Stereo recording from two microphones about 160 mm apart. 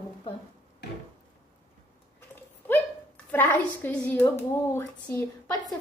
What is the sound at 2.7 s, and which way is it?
A woman's voice, 10° left (ahead or behind).